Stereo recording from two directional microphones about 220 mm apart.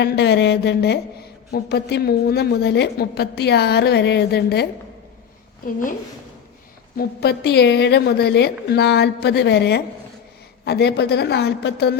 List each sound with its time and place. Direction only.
0.0 s a woman's voice: 50° left (ahead or behind)
6.9 s a woman's voice: 45° left (ahead or behind)